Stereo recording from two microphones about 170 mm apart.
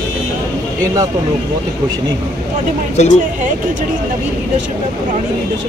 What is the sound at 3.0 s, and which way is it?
Speech, 40° left (ahead or behind).